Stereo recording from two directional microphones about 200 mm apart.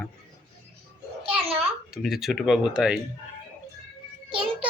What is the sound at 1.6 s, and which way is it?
A child's voice, centre (ahead or behind).